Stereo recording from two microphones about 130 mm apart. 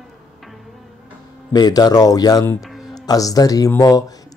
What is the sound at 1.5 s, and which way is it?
Speech, 30° left (ahead or behind).